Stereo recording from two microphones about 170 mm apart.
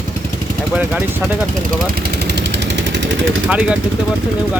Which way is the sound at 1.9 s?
70° right (ahead or behind).